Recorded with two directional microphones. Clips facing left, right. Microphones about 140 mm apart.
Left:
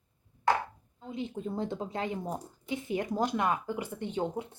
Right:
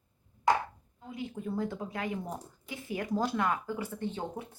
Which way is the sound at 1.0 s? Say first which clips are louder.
Left 2 dB; 25° left (ahead or behind).